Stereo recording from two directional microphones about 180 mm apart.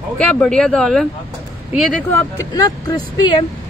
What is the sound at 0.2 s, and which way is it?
Speech, 5° left (ahead or behind).